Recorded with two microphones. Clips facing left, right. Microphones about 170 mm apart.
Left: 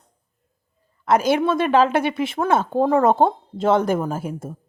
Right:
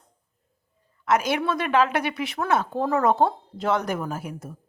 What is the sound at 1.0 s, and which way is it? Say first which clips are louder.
A woman's voice: left 5 dB; 30° left (ahead or behind).